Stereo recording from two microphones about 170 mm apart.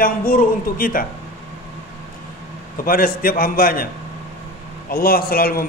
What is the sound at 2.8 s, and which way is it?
A man's voice, 55° left (ahead or behind).